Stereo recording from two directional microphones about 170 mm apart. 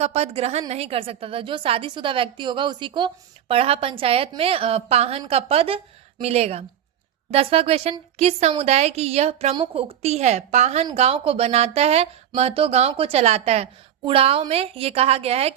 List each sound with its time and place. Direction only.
0.0 s a woman's voice: 40° right (ahead or behind)